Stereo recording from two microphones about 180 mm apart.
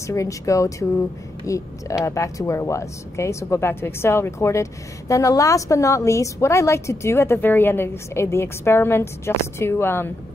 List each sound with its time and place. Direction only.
0.0 s speech: 15° left (ahead or behind)